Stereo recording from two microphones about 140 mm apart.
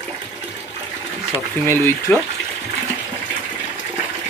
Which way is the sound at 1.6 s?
15° left (ahead or behind).